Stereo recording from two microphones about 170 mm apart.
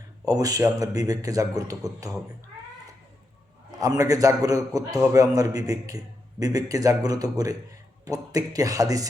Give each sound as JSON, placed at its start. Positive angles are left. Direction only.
{"t": 0.3, "sound": "a man's voice", "side_deg": -20}
{"t": 3.8, "sound": "a man's voice", "side_deg": -20}